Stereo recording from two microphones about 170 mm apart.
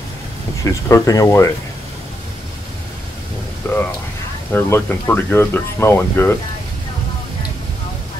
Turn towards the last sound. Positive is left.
turn(degrees=15)  # may be behind; listen again after turning